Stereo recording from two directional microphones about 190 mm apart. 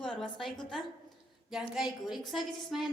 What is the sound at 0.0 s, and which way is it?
Speech, centre (ahead or behind).